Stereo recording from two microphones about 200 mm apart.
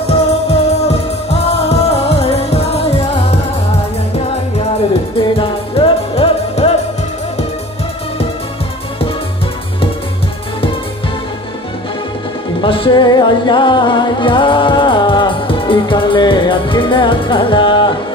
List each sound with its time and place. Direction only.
0.0 s music: 30° left (ahead or behind)
5.4 s music: 25° left (ahead or behind)
12.6 s music: 25° left (ahead or behind)